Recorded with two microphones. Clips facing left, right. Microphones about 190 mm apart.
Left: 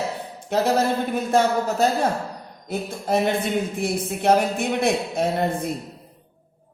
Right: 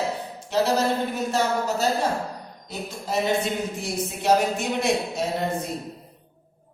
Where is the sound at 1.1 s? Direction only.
55° left (ahead or behind).